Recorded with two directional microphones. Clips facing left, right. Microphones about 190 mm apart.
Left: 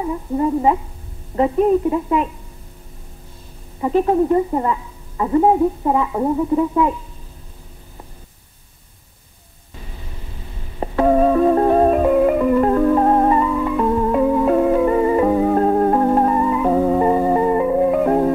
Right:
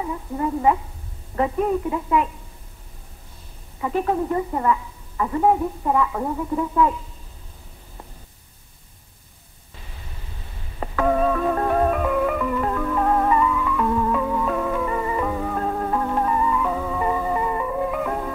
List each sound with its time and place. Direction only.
0.4 s speech: 25° left (ahead or behind)
3.8 s speech: 25° left (ahead or behind)
10.8 s music: 30° left (ahead or behind)